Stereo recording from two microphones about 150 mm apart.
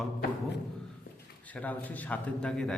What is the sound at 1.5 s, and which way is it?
A man's voice, 10° left (ahead or behind).